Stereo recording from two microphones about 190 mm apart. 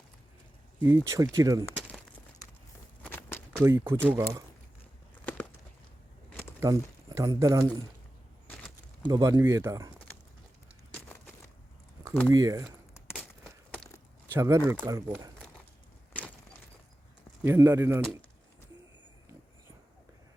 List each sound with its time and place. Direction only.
0.8 s speech: 15° right (ahead or behind)
3.0 s walk: 10° left (ahead or behind)
3.6 s speech: 15° right (ahead or behind)
6.6 s speech: 15° right (ahead or behind)
9.0 s speech: 20° right (ahead or behind)
12.3 s speech: 20° right (ahead or behind)
13.1 s a sound: centre (ahead or behind)
14.3 s speech: 15° right (ahead or behind)
17.4 s speech: 15° right (ahead or behind)